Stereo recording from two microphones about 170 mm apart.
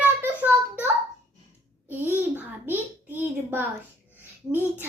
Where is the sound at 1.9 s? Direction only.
10° right (ahead or behind).